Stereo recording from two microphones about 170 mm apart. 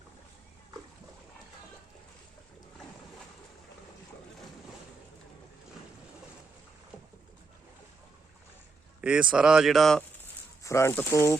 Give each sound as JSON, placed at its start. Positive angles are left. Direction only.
{"t": 9.0, "sound": "speech", "side_deg": -5}
{"t": 10.6, "sound": "speech", "side_deg": 15}